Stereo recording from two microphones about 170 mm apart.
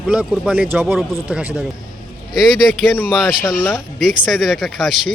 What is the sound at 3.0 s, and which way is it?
Speech, 5° right (ahead or behind).